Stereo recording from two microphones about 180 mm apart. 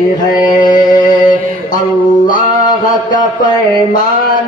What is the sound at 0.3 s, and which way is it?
Mantra, 20° left (ahead or behind).